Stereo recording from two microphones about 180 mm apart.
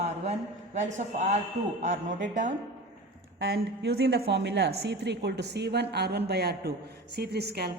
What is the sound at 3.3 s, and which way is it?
A woman's voice, 80° right.